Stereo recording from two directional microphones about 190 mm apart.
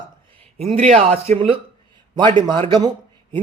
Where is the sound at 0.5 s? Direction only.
35° right (ahead or behind).